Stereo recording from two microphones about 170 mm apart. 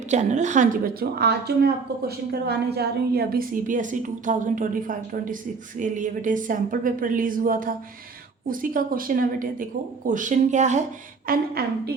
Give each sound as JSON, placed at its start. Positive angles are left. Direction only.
{"t": 0.1, "sound": "speech", "side_deg": -45}
{"t": 1.2, "sound": "a woman's voice", "side_deg": -70}
{"t": 11.3, "sound": "a woman's voice", "side_deg": -65}